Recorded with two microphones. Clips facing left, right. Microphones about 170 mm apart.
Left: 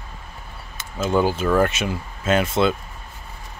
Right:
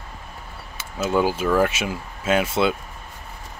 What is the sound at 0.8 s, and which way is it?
Speech, 10° right (ahead or behind).